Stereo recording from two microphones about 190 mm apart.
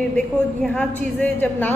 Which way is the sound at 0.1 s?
5° left (ahead or behind).